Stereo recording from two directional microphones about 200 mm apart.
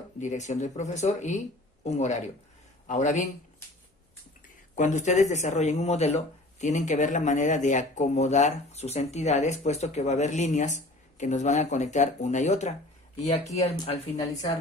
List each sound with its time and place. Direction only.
0.2 s speech: 35° left (ahead or behind)
4.7 s speech: 35° left (ahead or behind)
14.1 s a woman's voice: 20° left (ahead or behind)